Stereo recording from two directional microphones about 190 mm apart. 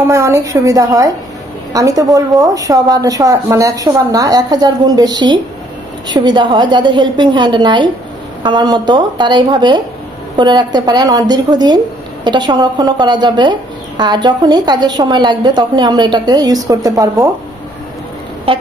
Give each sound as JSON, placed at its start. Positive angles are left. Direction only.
{"t": 0.1, "sound": "a woman's voice", "side_deg": -15}